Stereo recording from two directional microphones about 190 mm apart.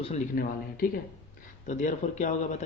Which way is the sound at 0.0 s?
35° left (ahead or behind).